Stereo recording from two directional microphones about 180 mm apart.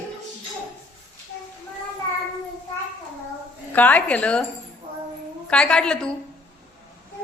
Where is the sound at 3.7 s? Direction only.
10° left (ahead or behind).